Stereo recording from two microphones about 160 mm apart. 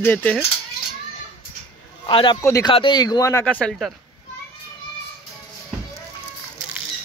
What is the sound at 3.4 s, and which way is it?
Speech, 10° left (ahead or behind).